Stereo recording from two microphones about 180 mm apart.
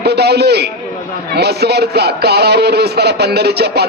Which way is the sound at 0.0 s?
65° right (ahead or behind).